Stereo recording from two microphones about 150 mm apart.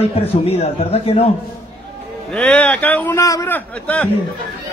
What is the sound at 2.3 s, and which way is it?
A man's voice, 5° left (ahead or behind).